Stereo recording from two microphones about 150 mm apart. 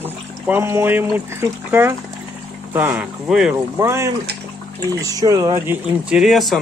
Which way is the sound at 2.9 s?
5° right (ahead or behind).